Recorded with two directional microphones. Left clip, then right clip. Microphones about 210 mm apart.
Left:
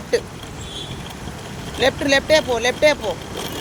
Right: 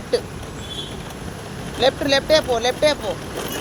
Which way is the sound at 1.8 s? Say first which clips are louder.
Left 1 dB; 25° left (ahead or behind).